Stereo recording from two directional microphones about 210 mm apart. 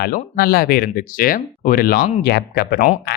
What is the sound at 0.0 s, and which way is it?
Speech, 45° left (ahead or behind).